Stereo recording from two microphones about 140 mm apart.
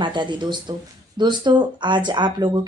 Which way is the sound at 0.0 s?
35° right (ahead or behind).